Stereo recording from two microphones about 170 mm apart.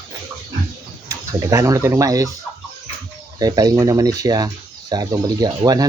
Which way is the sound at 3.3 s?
25° right (ahead or behind).